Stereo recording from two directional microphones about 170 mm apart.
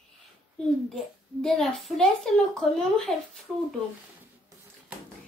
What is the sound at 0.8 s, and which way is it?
A woman's voice, centre (ahead or behind).